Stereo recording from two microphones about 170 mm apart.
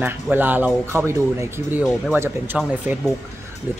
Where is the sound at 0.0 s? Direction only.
10° right (ahead or behind).